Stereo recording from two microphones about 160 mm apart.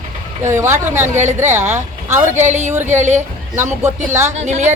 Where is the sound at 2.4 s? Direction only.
45° right (ahead or behind).